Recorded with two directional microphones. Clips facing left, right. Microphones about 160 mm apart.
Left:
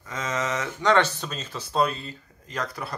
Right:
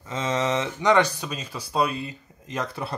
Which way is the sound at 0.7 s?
15° right (ahead or behind).